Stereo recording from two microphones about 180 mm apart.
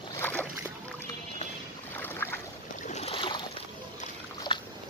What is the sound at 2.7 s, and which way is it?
Boat, 40° left (ahead or behind).